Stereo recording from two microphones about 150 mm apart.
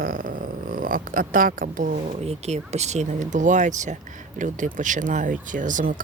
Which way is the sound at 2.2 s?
45° right (ahead or behind).